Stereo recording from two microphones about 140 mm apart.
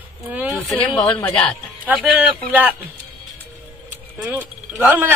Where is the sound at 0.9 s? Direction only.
10° left (ahead or behind).